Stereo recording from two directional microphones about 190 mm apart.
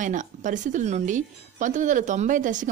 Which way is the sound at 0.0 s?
40° right (ahead or behind).